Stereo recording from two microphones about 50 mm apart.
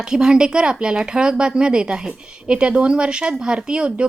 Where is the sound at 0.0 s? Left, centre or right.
Centre.